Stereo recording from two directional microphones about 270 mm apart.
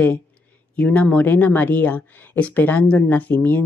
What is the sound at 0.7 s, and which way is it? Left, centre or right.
Speech, centre.